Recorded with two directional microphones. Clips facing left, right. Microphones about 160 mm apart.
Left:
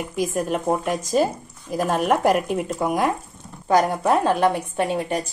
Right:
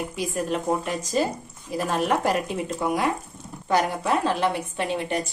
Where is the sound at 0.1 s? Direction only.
45° left (ahead or behind).